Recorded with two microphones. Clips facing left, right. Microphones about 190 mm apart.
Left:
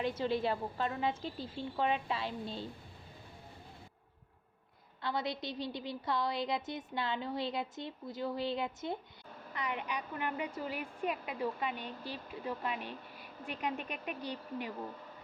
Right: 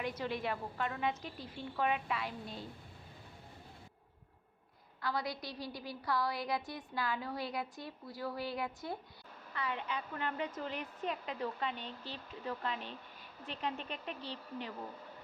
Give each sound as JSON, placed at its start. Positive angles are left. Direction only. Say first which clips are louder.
{"t": 0.0, "sound": "a woman's voice", "louder": "left 5 dB", "side_deg": 25}
{"t": 5.0, "sound": "a woman's voice", "louder": "left 2 dB", "side_deg": 25}